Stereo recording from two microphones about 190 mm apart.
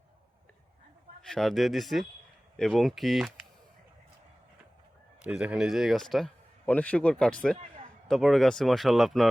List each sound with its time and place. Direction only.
1.3 s speech: centre (ahead or behind)
5.2 s speech: 5° right (ahead or behind)